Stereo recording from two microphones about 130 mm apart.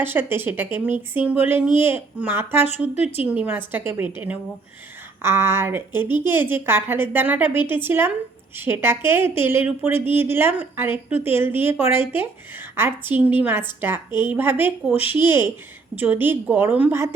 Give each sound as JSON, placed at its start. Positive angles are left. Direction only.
{"t": 0.0, "sound": "a woman's voice", "side_deg": -15}
{"t": 2.9, "sound": "a woman's voice", "side_deg": 55}
{"t": 3.2, "sound": "a woman's voice", "side_deg": -15}